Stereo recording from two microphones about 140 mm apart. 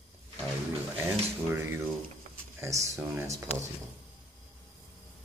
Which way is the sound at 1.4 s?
15° right (ahead or behind).